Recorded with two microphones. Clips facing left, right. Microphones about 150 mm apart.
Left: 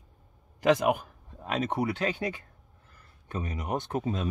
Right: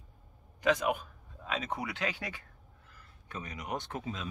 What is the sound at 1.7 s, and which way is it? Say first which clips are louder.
Speech: left 7 dB; 30° left (ahead or behind).